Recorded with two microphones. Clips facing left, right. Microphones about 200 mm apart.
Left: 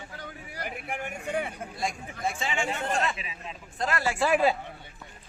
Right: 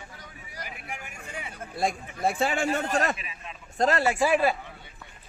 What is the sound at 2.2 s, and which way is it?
Speech, 55° right (ahead or behind).